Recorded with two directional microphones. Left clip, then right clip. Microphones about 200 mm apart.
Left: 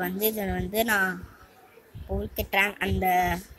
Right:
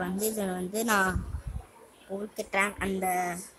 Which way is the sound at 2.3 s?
Centre (ahead or behind).